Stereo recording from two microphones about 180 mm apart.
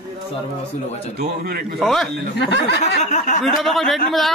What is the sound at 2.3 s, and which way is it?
Speech, 75° left (ahead or behind).